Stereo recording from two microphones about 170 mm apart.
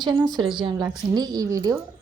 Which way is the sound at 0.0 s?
25° right (ahead or behind).